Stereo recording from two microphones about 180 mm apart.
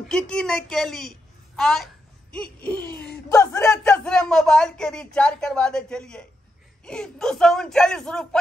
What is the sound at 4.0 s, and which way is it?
Speech, 5° left (ahead or behind).